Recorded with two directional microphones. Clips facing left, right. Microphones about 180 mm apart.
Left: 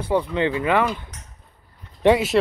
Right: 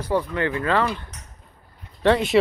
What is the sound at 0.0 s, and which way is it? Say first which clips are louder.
Speech: left 2 dB; 20° left (ahead or behind).